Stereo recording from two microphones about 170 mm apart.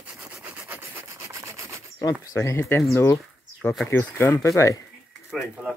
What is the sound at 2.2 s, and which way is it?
Speech, 15° left (ahead or behind).